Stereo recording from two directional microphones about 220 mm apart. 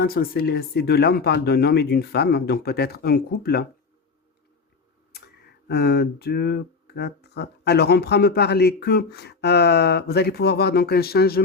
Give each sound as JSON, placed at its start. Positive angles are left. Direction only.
{"t": 0.0, "sound": "speech", "side_deg": 45}
{"t": 5.6, "sound": "speech", "side_deg": 50}